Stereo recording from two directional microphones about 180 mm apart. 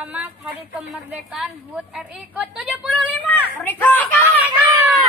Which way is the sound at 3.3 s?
10° left (ahead or behind).